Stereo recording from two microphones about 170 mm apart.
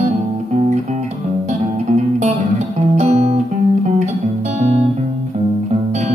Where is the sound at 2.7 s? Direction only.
40° right (ahead or behind).